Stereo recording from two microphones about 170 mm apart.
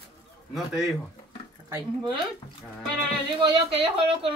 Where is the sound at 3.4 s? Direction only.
35° right (ahead or behind).